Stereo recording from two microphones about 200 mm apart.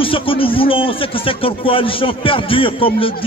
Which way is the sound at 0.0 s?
25° left (ahead or behind).